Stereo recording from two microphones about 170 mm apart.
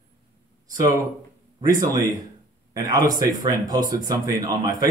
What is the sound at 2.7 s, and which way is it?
A man's voice, 20° right (ahead or behind).